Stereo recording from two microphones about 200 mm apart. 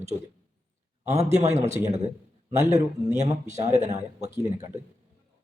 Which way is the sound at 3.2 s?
35° right (ahead or behind).